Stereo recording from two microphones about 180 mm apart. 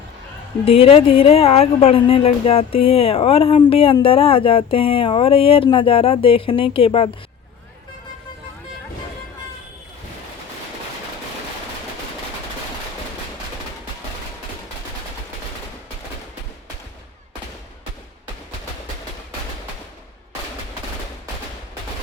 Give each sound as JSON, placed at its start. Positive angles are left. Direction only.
{"t": 0.6, "sound": "speech", "side_deg": 30}